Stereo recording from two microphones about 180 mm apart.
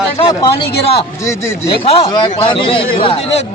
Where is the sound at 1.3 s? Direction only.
15° left (ahead or behind).